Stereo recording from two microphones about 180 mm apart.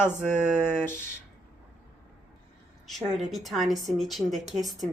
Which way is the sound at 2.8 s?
Centre (ahead or behind).